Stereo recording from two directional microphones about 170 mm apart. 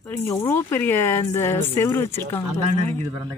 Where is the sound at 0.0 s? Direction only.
10° left (ahead or behind).